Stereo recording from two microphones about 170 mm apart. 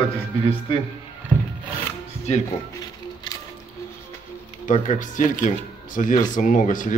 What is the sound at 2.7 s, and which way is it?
Music, 20° left (ahead or behind).